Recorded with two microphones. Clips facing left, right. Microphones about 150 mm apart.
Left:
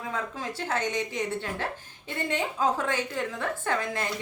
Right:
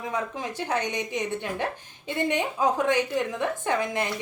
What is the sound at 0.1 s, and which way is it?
A woman's voice, 15° right (ahead or behind).